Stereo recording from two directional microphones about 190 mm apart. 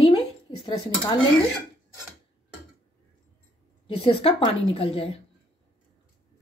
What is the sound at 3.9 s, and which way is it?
A woman's voice, 30° left (ahead or behind).